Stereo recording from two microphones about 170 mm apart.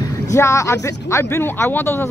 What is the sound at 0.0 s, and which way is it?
Speech, 15° left (ahead or behind).